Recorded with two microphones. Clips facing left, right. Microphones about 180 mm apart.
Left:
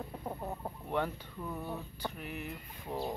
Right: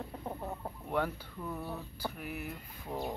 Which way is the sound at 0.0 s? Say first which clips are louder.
Even; centre (ahead or behind).